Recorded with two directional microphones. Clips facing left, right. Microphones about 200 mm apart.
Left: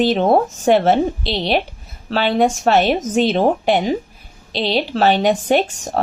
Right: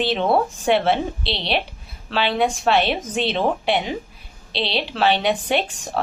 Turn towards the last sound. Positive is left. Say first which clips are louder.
# left 6 dB
turn(degrees=45)  # may be behind; listen again after turning